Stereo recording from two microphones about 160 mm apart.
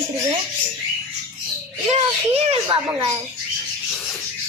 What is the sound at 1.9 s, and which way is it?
Speech, 40° right (ahead or behind).